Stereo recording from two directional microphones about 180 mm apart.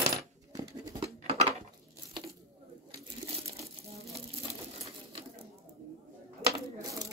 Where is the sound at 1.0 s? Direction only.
30° right (ahead or behind).